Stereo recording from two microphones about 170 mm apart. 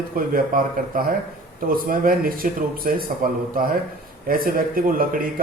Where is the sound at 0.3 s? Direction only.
55° right (ahead or behind).